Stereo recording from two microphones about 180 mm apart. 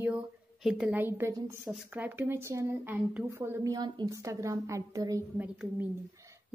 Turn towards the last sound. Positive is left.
turn(degrees=-5)  # may be behind; listen again after turning